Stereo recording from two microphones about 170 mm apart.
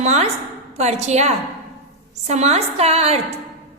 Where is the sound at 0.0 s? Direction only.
40° right (ahead or behind).